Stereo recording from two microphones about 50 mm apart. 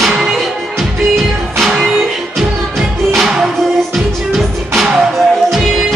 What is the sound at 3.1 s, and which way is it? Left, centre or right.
Music, centre.